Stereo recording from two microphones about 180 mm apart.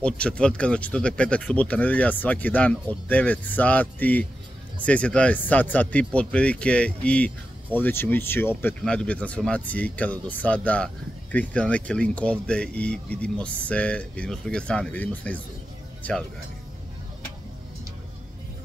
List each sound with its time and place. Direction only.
0.0 s speech: 5° left (ahead or behind)